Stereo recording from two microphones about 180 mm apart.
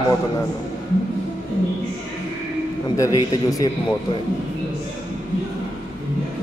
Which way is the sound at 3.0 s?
20° left (ahead or behind).